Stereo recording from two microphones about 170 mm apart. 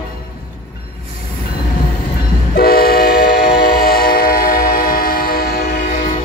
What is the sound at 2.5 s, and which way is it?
Train, 60° left (ahead or behind).